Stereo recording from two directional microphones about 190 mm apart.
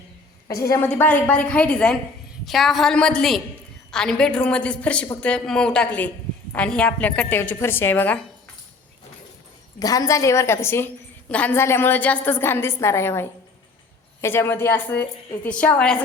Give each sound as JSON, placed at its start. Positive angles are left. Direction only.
{"t": 0.4, "sound": "a woman's voice", "side_deg": 15}
{"t": 9.8, "sound": "a woman's voice", "side_deg": 20}